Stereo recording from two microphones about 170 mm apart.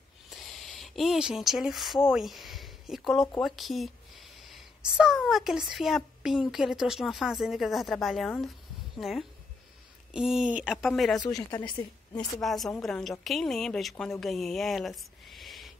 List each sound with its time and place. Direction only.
0.3 s a sound: centre (ahead or behind)
2.0 s a woman's voice: centre (ahead or behind)
11.1 s a woman's voice: 25° left (ahead or behind)
12.4 s a woman's voice: centre (ahead or behind)